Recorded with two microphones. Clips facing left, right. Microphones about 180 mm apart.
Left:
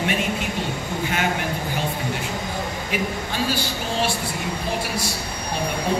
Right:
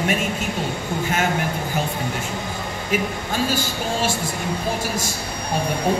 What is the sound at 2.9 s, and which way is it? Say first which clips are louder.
A woman's voice: right 5 dB; 45° right (ahead or behind).